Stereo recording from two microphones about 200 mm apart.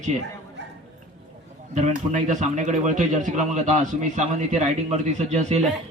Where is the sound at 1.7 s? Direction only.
35° right (ahead or behind).